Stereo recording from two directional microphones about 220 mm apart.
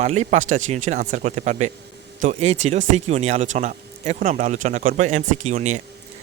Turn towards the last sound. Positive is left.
turn(degrees=-30)  # may be behind; listen again after turning